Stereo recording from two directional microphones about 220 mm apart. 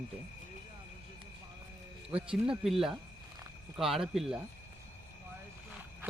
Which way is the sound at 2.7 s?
Centre (ahead or behind).